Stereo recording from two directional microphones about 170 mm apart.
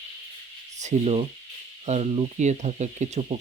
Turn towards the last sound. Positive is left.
turn(degrees=-40)  # may be behind; listen again after turning